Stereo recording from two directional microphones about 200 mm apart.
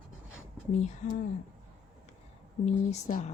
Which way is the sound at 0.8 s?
35° left (ahead or behind).